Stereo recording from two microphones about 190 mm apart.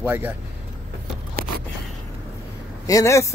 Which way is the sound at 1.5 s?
50° right (ahead or behind).